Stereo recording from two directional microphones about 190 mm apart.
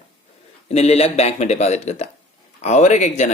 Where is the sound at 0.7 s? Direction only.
35° left (ahead or behind).